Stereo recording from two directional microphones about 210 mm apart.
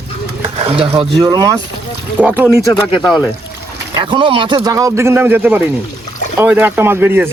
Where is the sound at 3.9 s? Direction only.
20° right (ahead or behind).